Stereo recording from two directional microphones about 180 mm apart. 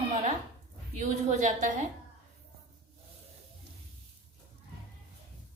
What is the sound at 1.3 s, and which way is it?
Speech, 40° right (ahead or behind).